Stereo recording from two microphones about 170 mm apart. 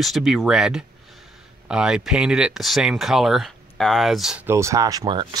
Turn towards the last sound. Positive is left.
turn(degrees=-30)  # may be behind; listen again after turning